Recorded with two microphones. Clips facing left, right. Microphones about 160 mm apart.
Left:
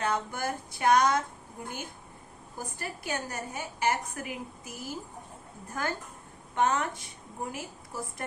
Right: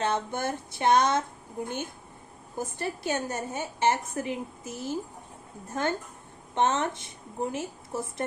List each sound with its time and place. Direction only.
0.0 s a woman's voice: 25° right (ahead or behind)
2.6 s a woman's voice: 25° right (ahead or behind)